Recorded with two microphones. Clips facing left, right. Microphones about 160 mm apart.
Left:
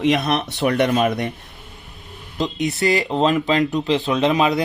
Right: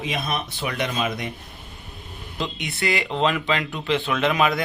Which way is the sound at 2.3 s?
40° left (ahead or behind).